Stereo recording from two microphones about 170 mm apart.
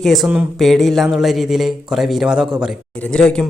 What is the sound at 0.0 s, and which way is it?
Speech, centre (ahead or behind).